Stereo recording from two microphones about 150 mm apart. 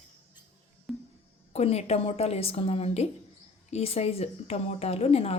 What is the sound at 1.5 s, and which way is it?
A woman's voice, 45° left (ahead or behind).